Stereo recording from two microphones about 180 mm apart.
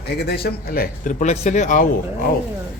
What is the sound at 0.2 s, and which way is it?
Speech, 60° left (ahead or behind).